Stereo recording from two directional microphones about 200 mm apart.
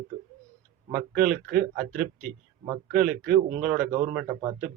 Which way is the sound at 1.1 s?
50° right (ahead or behind).